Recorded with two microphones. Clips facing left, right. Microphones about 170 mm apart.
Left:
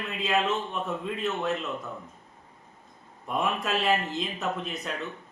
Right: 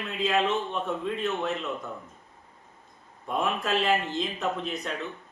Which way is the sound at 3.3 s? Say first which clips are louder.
Right 1 dB; centre (ahead or behind).